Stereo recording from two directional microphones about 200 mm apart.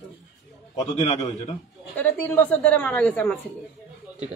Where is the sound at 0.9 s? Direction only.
35° left (ahead or behind).